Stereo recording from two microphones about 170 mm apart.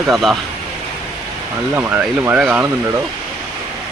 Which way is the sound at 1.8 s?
10° right (ahead or behind).